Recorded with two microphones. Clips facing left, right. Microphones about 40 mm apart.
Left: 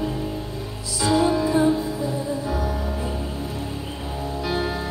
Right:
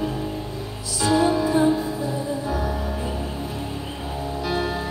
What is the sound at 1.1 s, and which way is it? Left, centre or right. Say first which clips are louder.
Music: even; centre.